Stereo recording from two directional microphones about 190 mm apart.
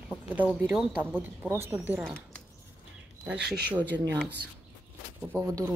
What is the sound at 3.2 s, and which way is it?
Speech, 5° right (ahead or behind).